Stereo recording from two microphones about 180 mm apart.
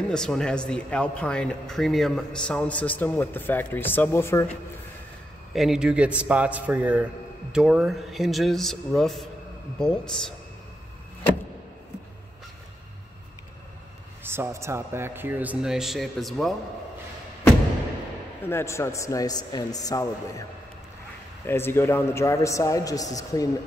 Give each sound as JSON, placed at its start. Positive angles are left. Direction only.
{"t": 0.1, "sound": "a man's voice", "side_deg": 5}
{"t": 5.5, "sound": "a man's voice", "side_deg": 0}
{"t": 14.2, "sound": "speech", "side_deg": -15}
{"t": 18.4, "sound": "a man's voice", "side_deg": 15}
{"t": 21.5, "sound": "a man's voice", "side_deg": 15}